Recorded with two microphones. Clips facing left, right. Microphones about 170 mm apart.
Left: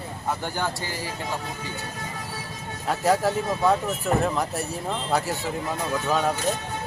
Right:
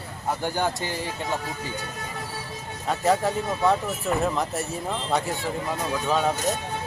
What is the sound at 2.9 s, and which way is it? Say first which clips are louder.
Speech: left 1 dB; centre (ahead or behind).